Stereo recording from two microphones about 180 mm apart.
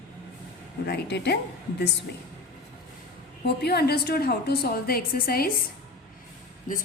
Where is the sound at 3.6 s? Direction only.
60° left (ahead or behind).